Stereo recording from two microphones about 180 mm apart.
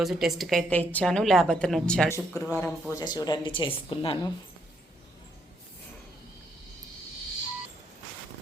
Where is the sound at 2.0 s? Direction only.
15° left (ahead or behind).